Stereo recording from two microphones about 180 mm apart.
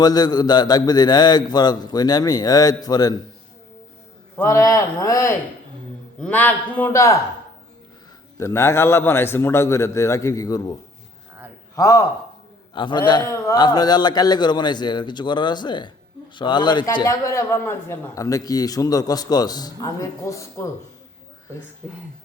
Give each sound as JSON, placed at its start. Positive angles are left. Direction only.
{"t": 0.0, "sound": "a man's voice", "side_deg": 20}
{"t": 4.4, "sound": "a man's voice", "side_deg": 15}
{"t": 6.1, "sound": "a man's voice", "side_deg": 5}
{"t": 8.4, "sound": "a man's voice", "side_deg": 15}
{"t": 11.8, "sound": "a man's voice", "side_deg": 20}